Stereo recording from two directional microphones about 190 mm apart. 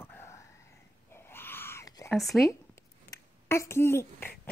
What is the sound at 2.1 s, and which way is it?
Speech, centre (ahead or behind).